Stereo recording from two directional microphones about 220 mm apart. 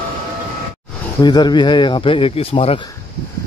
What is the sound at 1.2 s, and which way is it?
Speech, 20° left (ahead or behind).